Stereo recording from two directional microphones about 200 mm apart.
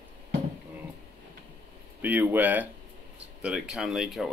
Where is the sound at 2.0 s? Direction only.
10° right (ahead or behind).